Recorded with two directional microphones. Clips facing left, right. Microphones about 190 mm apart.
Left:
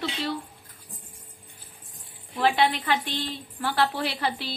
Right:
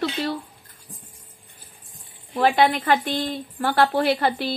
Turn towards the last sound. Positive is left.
turn(degrees=-50)  # may be behind; listen again after turning